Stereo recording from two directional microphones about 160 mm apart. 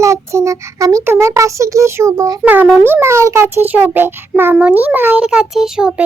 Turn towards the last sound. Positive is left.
turn(degrees=-5)  # may be behind; listen again after turning